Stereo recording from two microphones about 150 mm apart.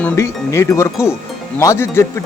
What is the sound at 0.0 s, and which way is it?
Wind chime, 15° left (ahead or behind).